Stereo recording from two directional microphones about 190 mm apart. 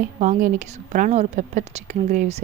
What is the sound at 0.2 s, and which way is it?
A woman's voice, 40° right (ahead or behind).